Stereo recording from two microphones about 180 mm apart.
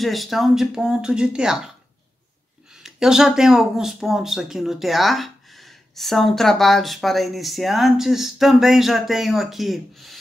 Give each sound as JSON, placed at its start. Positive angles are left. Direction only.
{"t": 0.0, "sound": "speech", "side_deg": 0}
{"t": 2.7, "sound": "speech", "side_deg": -5}